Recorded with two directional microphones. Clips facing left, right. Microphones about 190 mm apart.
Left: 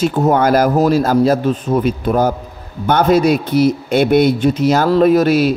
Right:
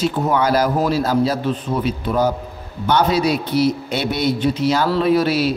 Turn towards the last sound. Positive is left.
turn(degrees=50)  # may be behind; listen again after turning